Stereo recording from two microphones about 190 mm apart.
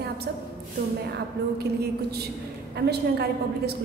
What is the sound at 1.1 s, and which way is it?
A woman's voice, 60° right (ahead or behind).